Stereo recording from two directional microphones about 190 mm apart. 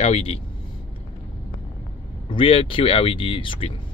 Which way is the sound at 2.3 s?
25° left (ahead or behind).